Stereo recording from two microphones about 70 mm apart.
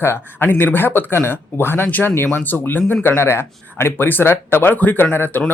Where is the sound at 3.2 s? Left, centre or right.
Left.